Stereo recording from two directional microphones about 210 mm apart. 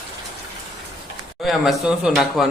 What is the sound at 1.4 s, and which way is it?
Speech, centre (ahead or behind).